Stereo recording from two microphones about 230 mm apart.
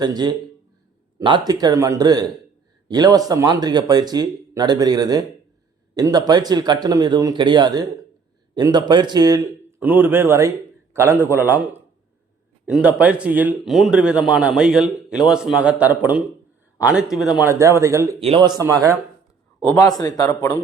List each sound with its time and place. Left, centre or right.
0.0 s speech: centre
19.6 s a man's voice: centre